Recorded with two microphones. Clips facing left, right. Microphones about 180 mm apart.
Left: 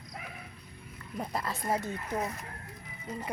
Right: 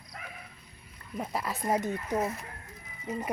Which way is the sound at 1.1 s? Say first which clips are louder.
Right 1 dB; 5° right (ahead or behind).